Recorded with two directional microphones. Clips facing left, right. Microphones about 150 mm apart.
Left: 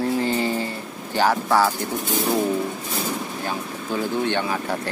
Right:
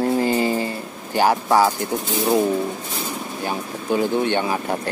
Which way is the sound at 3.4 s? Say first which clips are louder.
Right 2 dB; 20° right (ahead or behind).